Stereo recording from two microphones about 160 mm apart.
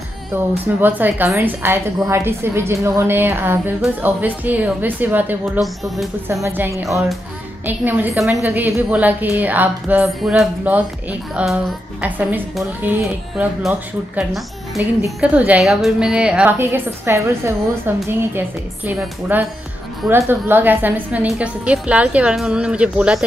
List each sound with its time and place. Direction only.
0.7 s a woman's voice: 10° right (ahead or behind)
5.4 s speech: centre (ahead or behind)
6.4 s a woman's voice: 15° right (ahead or behind)
6.8 s speech: centre (ahead or behind)
7.6 s a woman's voice: 10° right (ahead or behind)
14.8 s a woman's voice: 15° right (ahead or behind)